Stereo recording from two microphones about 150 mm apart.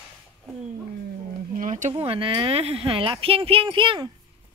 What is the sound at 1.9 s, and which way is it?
Speech, 35° right (ahead or behind).